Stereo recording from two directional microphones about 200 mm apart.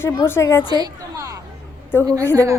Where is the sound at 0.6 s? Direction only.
20° right (ahead or behind).